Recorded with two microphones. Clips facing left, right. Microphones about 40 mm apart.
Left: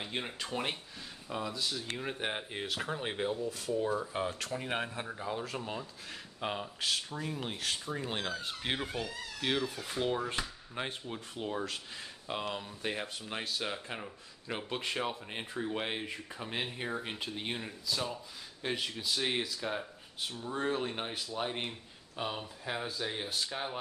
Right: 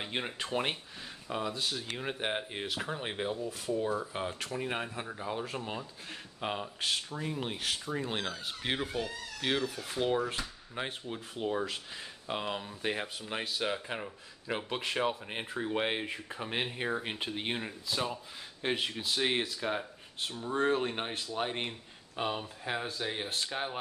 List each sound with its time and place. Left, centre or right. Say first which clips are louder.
0.0 s speech: right 2 dB; centre
2.1 s speech: right 2 dB; centre
4.6 s speech: left 1 dB; centre
4.9 s speech: right 1 dB; centre